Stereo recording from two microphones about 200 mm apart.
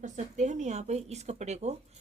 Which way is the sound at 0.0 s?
40° right (ahead or behind).